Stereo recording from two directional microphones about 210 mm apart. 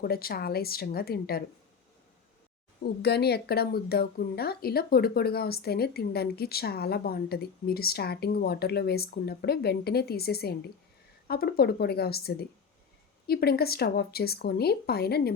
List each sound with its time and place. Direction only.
0.0 s a woman's voice: 45° left (ahead or behind)
2.8 s a woman's voice: 50° left (ahead or behind)